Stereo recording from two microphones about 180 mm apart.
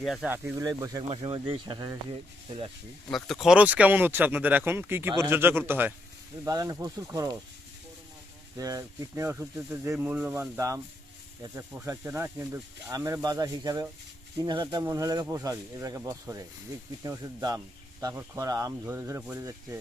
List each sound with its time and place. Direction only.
0.0 s speech: 5° right (ahead or behind); by 2.0 s 25° right (ahead or behind)
3.1 s speech: centre (ahead or behind); by 7.3 s 20° right (ahead or behind)
8.5 s speech: 20° right (ahead or behind)